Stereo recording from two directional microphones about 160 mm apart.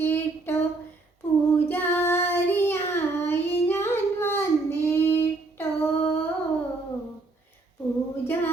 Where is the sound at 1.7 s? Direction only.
15° left (ahead or behind).